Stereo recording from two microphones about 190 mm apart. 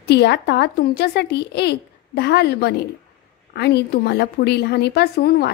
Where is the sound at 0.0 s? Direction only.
60° left (ahead or behind).